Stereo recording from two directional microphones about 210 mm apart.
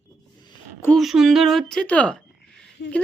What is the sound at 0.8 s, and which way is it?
A woman's voice, 5° left (ahead or behind).